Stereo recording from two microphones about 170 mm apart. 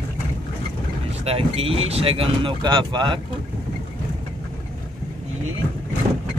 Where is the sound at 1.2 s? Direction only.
35° right (ahead or behind).